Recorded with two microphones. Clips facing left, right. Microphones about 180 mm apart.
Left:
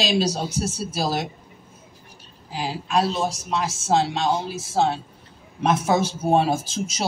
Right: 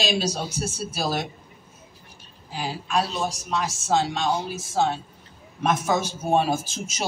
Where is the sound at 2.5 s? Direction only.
30° left (ahead or behind).